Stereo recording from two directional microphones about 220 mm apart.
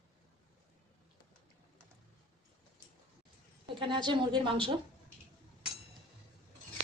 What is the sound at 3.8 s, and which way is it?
Speech, 20° right (ahead or behind).